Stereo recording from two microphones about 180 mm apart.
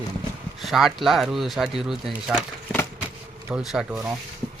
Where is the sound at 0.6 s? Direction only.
Centre (ahead or behind).